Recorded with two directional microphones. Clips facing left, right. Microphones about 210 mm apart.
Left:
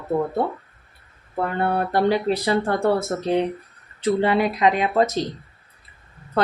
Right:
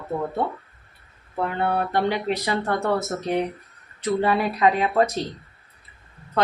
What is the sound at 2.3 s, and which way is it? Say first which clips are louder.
A woman's voice: left 3 dB; 30° left (ahead or behind).